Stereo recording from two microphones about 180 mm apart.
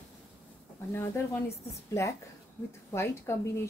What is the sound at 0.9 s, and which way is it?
Speech, 10° left (ahead or behind).